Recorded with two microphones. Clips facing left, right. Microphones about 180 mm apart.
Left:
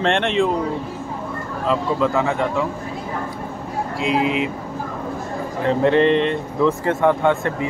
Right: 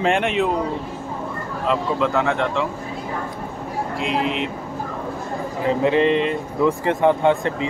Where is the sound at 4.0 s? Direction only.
Centre (ahead or behind).